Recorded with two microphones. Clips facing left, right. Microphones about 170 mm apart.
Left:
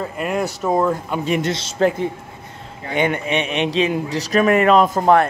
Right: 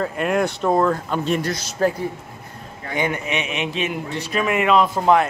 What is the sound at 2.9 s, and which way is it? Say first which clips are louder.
A man's voice: left 4 dB; 25° left (ahead or behind).